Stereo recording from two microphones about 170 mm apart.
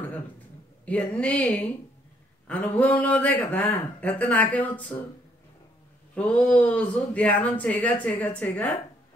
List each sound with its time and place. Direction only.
0.8 s speech: 5° left (ahead or behind)
6.1 s speech: 5° left (ahead or behind)